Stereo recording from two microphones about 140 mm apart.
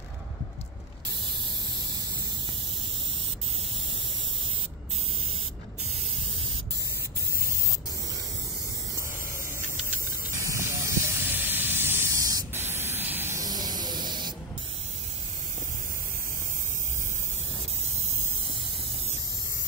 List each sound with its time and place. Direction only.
10.4 s hiss: 20° right (ahead or behind)